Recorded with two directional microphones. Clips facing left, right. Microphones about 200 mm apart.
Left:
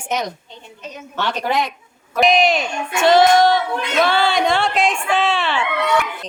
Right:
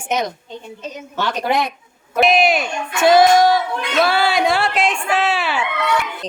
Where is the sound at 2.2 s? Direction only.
5° right (ahead or behind).